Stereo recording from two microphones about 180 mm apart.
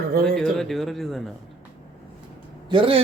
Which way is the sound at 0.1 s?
55° right (ahead or behind).